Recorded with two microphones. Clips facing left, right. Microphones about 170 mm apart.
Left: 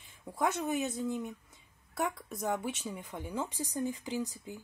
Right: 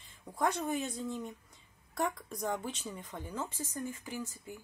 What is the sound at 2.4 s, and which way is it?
A woman's voice, 10° left (ahead or behind).